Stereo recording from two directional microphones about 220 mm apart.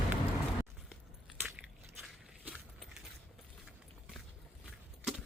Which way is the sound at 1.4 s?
5° right (ahead or behind).